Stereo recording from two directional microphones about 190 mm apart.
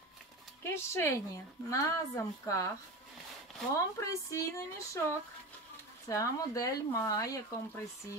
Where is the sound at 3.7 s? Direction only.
15° left (ahead or behind).